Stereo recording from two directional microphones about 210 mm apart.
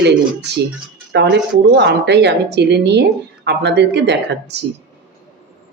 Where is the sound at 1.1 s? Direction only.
55° right (ahead or behind).